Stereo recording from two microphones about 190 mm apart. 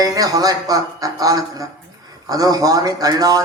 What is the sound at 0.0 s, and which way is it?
A man's voice, 20° right (ahead or behind).